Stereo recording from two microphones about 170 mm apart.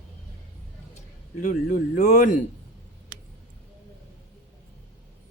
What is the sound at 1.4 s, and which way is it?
Speech, 50° left (ahead or behind).